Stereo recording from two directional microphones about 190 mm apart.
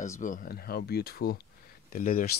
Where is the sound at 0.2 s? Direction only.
45° left (ahead or behind).